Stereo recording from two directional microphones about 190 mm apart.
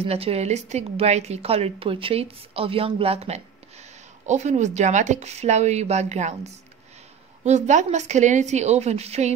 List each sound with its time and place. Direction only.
0.0 s a woman's voice: 30° right (ahead or behind)